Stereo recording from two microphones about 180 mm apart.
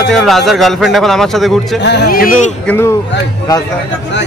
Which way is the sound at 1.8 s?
70° left (ahead or behind).